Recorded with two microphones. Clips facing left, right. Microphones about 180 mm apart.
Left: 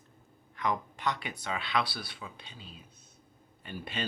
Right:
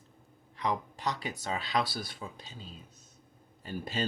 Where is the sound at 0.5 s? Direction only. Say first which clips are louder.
Even; 35° right (ahead or behind).